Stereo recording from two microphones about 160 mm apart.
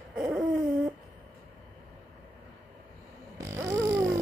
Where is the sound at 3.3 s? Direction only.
20° right (ahead or behind).